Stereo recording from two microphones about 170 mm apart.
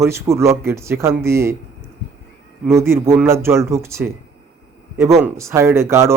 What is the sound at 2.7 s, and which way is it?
A man's voice, 15° right (ahead or behind).